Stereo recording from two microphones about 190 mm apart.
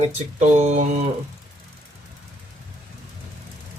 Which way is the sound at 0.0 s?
40° right (ahead or behind).